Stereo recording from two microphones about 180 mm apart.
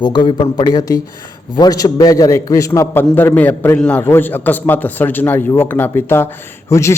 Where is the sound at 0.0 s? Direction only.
25° left (ahead or behind).